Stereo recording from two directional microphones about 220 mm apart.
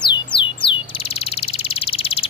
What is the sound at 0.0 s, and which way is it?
Bird, 20° left (ahead or behind).